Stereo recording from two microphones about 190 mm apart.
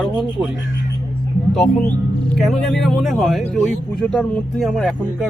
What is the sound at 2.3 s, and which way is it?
Speech, centre (ahead or behind).